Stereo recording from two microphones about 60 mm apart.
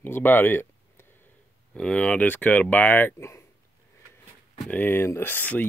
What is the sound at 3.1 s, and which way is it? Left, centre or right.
Speech, left.